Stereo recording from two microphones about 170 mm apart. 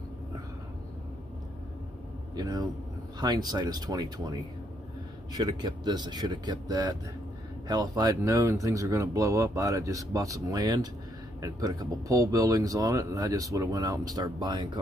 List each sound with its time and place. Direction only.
2.3 s a man's voice: 20° right (ahead or behind)